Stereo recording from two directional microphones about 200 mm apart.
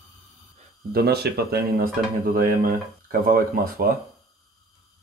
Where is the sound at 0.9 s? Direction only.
55° right (ahead or behind).